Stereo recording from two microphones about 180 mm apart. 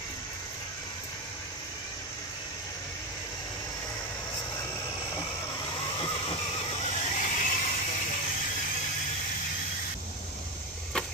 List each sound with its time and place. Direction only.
5.1 s vehicle: 25° left (ahead or behind); by 7.9 s 45° left (ahead or behind)